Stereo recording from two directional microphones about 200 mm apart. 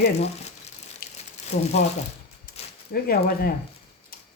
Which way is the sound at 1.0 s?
50° left (ahead or behind).